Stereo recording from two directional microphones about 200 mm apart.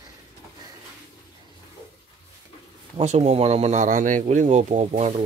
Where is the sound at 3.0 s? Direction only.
35° right (ahead or behind).